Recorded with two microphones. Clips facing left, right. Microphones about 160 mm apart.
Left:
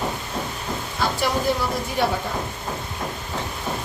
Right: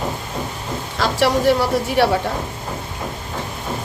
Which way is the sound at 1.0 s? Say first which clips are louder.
Right 6 dB; 80° right.